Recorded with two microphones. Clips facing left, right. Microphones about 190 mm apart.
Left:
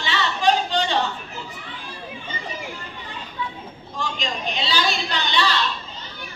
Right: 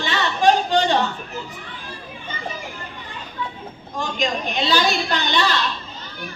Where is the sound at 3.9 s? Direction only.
45° right (ahead or behind).